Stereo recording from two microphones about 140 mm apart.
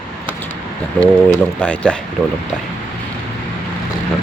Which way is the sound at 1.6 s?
10° left (ahead or behind).